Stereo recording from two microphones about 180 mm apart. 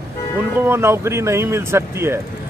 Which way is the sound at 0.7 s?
15° right (ahead or behind).